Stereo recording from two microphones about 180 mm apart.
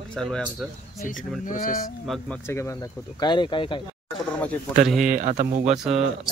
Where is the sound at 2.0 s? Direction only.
Centre (ahead or behind); by 3.8 s 25° left (ahead or behind).